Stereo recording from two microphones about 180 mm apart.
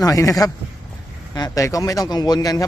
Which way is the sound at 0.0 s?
20° left (ahead or behind).